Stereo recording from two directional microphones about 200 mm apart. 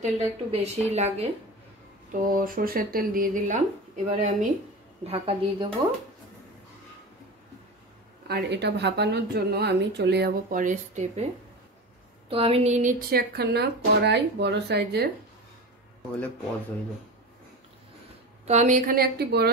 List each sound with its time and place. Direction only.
0.0 s a woman's voice: 30° right (ahead or behind)
2.1 s a woman's voice: 45° right (ahead or behind)
8.3 s speech: 55° right (ahead or behind); by 11.2 s 35° right (ahead or behind)
12.3 s a woman's voice: 30° right (ahead or behind)
13.1 s speech: 50° right (ahead or behind)
18.5 s speech: 35° right (ahead or behind); by 19.5 s 50° right (ahead or behind)